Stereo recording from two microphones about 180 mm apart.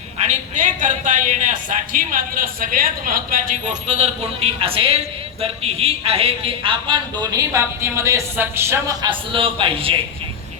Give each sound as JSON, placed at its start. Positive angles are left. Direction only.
{"t": 0.3, "sound": "a woman's voice", "side_deg": -40}